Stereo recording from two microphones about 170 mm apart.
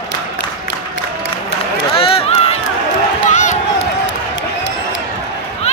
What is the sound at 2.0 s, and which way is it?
Run, 35° left (ahead or behind).